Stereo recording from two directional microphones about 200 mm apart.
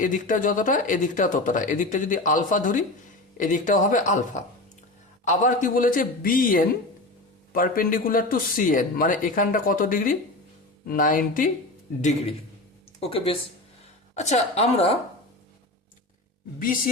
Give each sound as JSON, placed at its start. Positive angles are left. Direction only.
{"t": 0.0, "sound": "speech", "side_deg": 40}
{"t": 5.2, "sound": "speech", "side_deg": 40}
{"t": 13.0, "sound": "speech", "side_deg": 30}
{"t": 16.6, "sound": "speech", "side_deg": 45}